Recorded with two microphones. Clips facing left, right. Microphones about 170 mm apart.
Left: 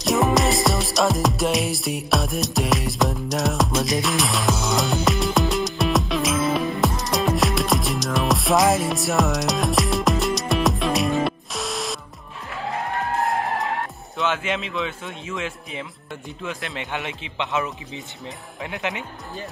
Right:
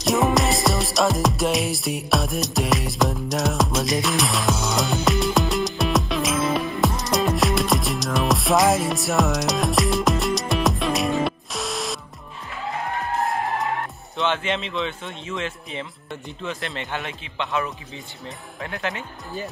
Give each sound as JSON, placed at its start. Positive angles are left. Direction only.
{"t": 0.0, "sound": "music", "side_deg": 0}
{"t": 14.1, "sound": "a man's voice", "side_deg": 5}
{"t": 16.9, "sound": "a man's voice", "side_deg": 20}